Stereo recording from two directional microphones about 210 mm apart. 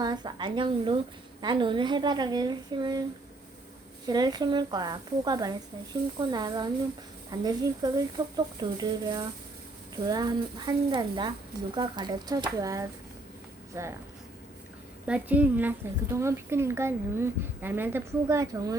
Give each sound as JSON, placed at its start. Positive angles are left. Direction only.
{"t": 0.0, "sound": "a woman's voice", "side_deg": -20}
{"t": 4.0, "sound": "a woman's voice", "side_deg": -20}
{"t": 15.0, "sound": "speech", "side_deg": -5}